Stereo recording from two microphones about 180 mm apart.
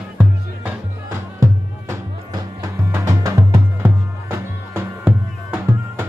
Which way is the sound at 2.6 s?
20° right (ahead or behind).